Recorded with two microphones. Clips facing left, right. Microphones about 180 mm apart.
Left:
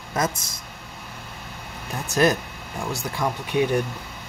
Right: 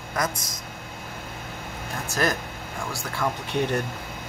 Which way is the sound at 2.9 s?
15° left (ahead or behind).